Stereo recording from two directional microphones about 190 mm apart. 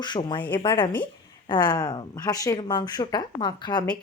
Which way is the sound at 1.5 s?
20° left (ahead or behind).